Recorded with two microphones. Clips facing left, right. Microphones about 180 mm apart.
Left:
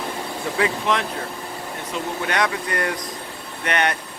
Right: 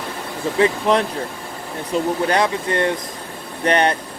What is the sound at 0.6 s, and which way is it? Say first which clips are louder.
Speech: right 6 dB; 35° right (ahead or behind).